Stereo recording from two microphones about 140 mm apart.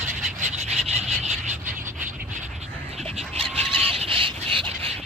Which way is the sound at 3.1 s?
45° right (ahead or behind).